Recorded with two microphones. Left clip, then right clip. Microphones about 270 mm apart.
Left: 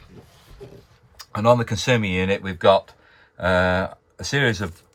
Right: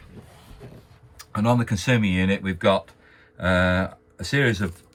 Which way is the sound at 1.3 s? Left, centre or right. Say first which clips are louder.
Left 6 dB; left.